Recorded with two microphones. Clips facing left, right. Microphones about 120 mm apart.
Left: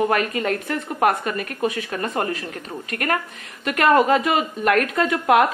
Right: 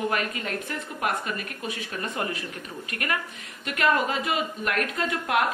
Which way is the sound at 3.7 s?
70° left (ahead or behind).